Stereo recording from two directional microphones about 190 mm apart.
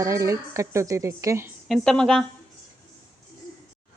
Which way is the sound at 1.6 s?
Centre (ahead or behind).